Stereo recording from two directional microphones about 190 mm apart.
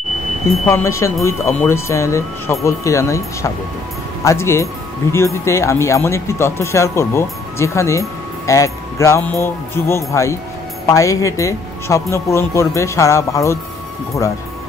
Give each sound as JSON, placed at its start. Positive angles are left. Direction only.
{"t": 0.7, "sound": "speech", "side_deg": 15}